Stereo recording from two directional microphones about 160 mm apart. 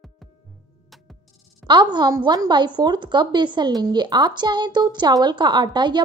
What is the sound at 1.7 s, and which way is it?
A woman's voice, 30° right (ahead or behind).